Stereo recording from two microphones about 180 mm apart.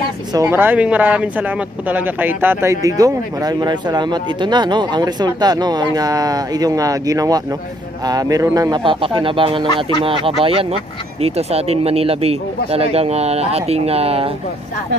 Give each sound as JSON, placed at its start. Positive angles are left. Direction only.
{"t": 0.3, "sound": "speech", "side_deg": -15}